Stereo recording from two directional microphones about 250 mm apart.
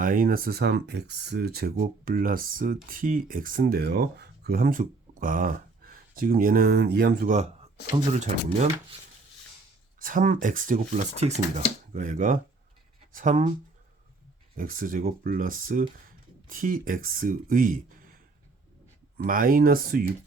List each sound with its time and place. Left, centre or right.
0.0 s speech: right
10.0 s speech: right
14.5 s speech: right
19.1 s speech: right